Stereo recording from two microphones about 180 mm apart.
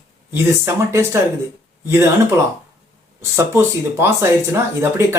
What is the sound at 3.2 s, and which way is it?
Speech, 15° right (ahead or behind).